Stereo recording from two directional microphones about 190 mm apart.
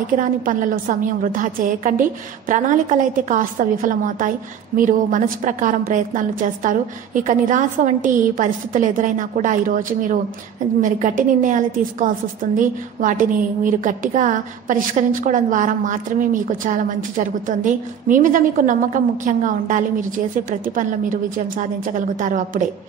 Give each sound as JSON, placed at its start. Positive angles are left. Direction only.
{"t": 0.2, "sound": "a woman's voice", "side_deg": -45}